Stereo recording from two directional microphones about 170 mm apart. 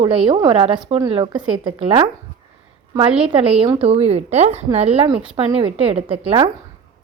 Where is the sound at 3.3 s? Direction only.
35° right (ahead or behind).